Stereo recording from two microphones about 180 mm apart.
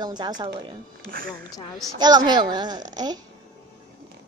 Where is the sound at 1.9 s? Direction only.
25° right (ahead or behind).